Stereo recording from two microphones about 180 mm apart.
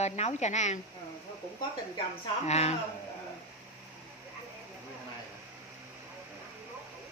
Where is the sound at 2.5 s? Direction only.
35° left (ahead or behind).